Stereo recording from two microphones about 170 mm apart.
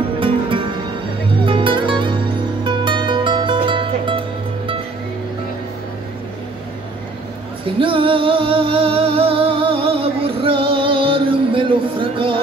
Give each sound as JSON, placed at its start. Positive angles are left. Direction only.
{"t": 0.2, "sound": "music", "side_deg": -30}
{"t": 7.8, "sound": "music", "side_deg": -30}